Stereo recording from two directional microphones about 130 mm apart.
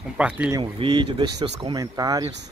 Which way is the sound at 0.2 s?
10° right (ahead or behind).